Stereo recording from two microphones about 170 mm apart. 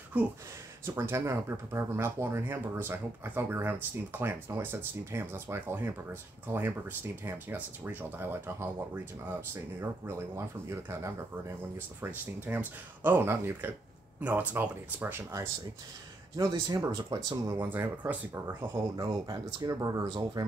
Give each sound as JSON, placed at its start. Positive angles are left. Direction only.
{"t": 0.8, "sound": "speech", "side_deg": -15}
{"t": 17.6, "sound": "speech", "side_deg": -10}